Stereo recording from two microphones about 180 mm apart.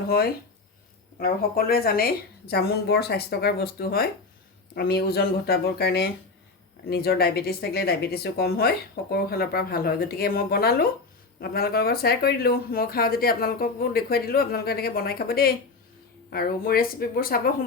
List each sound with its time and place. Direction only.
1.2 s speech: 55° left (ahead or behind)